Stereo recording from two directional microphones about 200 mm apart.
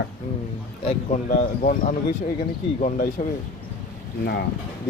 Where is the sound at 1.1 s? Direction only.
40° left (ahead or behind).